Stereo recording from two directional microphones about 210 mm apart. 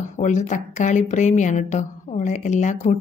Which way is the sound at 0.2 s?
35° left (ahead or behind).